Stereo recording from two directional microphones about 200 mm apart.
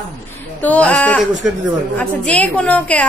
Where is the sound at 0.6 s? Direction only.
5° left (ahead or behind).